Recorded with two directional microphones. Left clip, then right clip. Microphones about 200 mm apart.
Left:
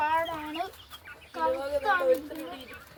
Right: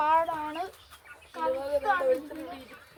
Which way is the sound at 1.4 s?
Centre (ahead or behind).